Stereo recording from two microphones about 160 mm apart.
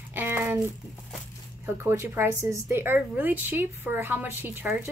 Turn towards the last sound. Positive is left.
turn(degrees=-10)  # may be behind; listen again after turning